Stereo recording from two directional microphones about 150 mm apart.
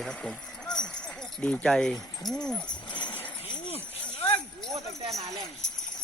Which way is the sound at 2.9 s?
30° left (ahead or behind).